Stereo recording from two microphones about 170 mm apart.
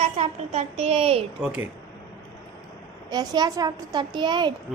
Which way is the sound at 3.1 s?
25° right (ahead or behind).